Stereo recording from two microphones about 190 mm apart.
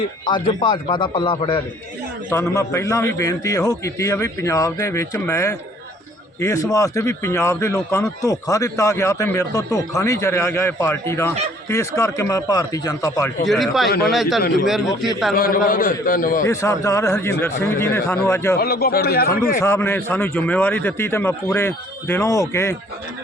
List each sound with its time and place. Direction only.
0.3 s speech: 25° left (ahead or behind)
2.3 s a man's voice: 15° left (ahead or behind)
13.4 s a man's voice: centre (ahead or behind)
15.4 s a man's voice: 50° left (ahead or behind)
16.5 s a man's voice: 15° left (ahead or behind)
18.5 s a man's voice: 55° left (ahead or behind)
19.6 s a man's voice: 15° left (ahead or behind)